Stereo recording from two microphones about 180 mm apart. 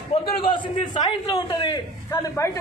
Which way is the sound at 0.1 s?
35° left (ahead or behind).